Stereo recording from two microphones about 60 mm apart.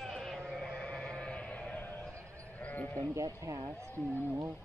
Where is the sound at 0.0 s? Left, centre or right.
Centre.